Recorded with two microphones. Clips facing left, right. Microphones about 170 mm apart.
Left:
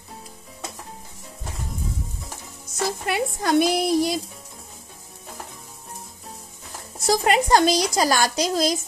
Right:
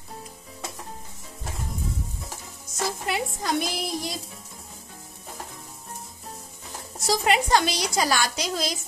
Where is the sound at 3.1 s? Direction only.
55° left (ahead or behind).